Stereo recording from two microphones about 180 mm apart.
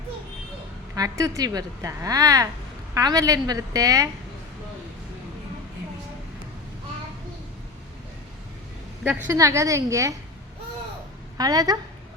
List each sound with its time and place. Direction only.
0.9 s a woman's voice: 20° right (ahead or behind)
9.2 s a woman's voice: 15° right (ahead or behind)
11.3 s a woman's voice: 20° right (ahead or behind)